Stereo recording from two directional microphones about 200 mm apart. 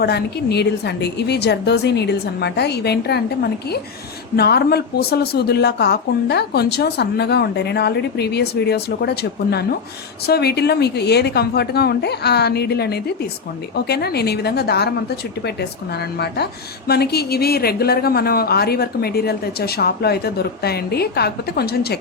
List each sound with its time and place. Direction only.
0.0 s speech: 55° left (ahead or behind)
16.1 s a woman's voice: 55° left (ahead or behind)